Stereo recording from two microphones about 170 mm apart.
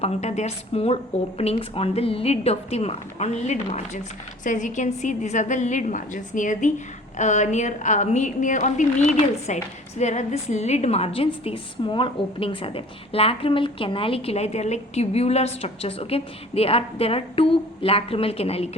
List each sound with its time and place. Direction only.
0.0 s a woman's voice: 40° left (ahead or behind)